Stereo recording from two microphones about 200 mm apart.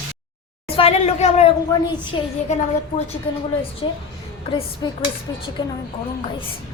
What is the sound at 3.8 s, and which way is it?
A woman's voice, 20° left (ahead or behind).